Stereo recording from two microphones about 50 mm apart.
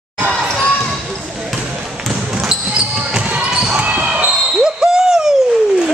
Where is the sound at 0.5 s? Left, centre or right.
Centre.